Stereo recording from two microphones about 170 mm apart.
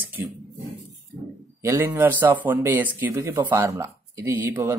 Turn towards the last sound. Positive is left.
turn(degrees=-15)  # may be behind; listen again after turning